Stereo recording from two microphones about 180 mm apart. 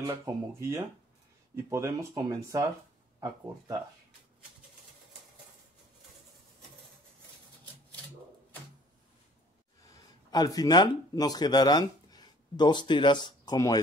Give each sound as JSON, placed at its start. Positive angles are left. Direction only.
{"t": 0.0, "sound": "speech", "side_deg": -20}
{"t": 9.9, "sound": "speech", "side_deg": 20}